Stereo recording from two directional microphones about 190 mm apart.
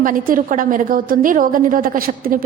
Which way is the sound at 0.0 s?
45° right (ahead or behind).